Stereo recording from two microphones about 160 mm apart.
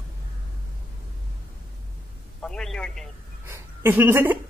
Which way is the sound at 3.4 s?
15° right (ahead or behind).